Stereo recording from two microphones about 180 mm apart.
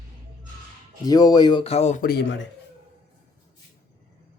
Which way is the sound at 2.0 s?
65° left (ahead or behind).